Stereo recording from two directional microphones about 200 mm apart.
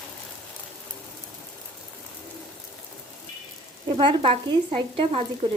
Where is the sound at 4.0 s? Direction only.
25° right (ahead or behind).